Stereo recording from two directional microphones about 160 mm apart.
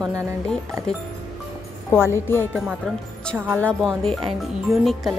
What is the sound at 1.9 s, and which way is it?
Speech, 15° left (ahead or behind).